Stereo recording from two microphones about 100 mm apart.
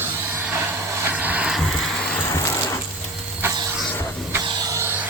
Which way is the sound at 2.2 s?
30° left (ahead or behind).